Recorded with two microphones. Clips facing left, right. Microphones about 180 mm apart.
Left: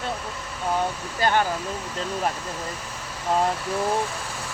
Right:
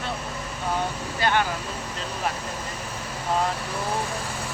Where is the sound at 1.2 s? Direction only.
40° left (ahead or behind).